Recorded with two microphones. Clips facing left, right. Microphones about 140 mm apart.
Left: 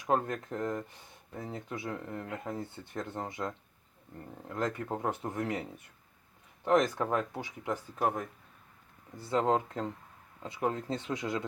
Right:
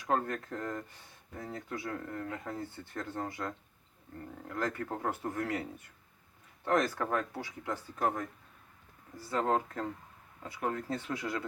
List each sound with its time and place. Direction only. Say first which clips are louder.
0.0 s speech: left 2 dB; 20° left (ahead or behind)
6.7 s speech: left 3 dB; 20° left (ahead or behind)